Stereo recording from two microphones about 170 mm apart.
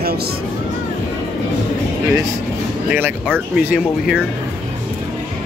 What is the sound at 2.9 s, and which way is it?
Speech, 10° right (ahead or behind).